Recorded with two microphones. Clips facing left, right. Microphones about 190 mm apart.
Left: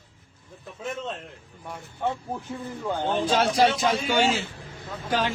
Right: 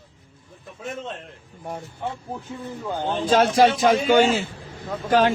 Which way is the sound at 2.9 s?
10° right (ahead or behind).